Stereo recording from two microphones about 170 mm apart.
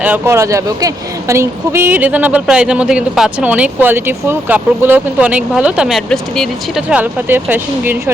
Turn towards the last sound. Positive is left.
turn(degrees=-10)  # may be behind; listen again after turning